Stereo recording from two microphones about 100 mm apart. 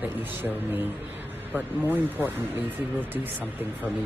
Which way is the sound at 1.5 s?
20° right (ahead or behind).